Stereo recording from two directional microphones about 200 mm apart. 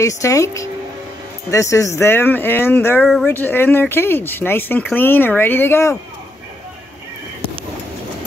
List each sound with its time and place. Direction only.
0.0 s speech: 15° left (ahead or behind)